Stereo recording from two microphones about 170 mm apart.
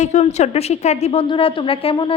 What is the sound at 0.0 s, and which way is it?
A woman's voice, 40° left (ahead or behind).